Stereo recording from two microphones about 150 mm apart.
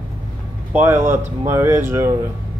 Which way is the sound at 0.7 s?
15° right (ahead or behind).